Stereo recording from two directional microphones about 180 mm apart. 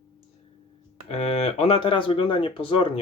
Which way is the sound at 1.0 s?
35° left (ahead or behind).